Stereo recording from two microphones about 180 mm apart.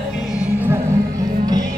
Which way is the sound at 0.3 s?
10° right (ahead or behind).